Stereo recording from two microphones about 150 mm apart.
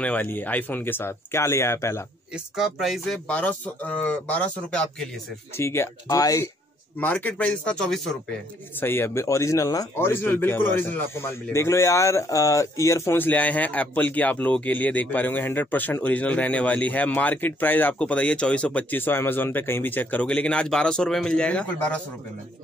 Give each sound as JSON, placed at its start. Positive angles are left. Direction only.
{"t": 0.0, "sound": "speech", "side_deg": 10}
{"t": 2.3, "sound": "speech", "side_deg": -5}
{"t": 5.6, "sound": "speech", "side_deg": 15}
{"t": 7.0, "sound": "speech", "side_deg": 10}
{"t": 8.7, "sound": "speech", "side_deg": 15}